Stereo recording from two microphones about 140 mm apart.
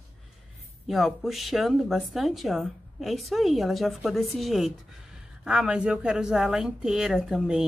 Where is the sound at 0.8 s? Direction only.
Centre (ahead or behind).